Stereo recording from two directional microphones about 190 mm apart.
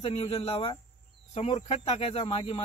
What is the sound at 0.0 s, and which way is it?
Speech, 30° left (ahead or behind).